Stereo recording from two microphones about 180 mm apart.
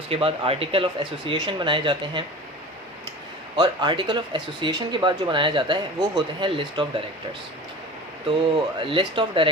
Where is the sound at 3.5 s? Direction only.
25° right (ahead or behind).